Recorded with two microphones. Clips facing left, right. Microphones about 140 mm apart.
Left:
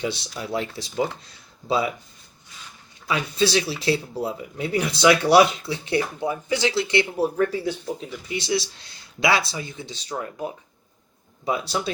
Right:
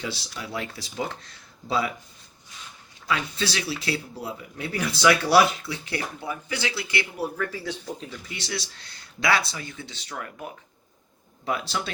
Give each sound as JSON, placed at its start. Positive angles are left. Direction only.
{"t": 0.0, "sound": "speech", "side_deg": 20}
{"t": 3.1, "sound": "speech", "side_deg": 20}
{"t": 8.3, "sound": "speech", "side_deg": 15}